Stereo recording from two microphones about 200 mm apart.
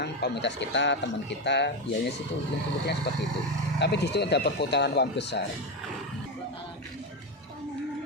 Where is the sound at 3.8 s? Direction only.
60° left (ahead or behind).